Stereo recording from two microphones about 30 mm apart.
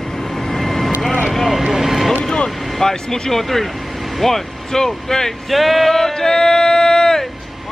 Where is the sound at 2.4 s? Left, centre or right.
Centre.